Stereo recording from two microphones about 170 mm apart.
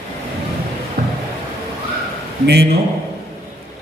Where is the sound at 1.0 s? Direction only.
65° right (ahead or behind).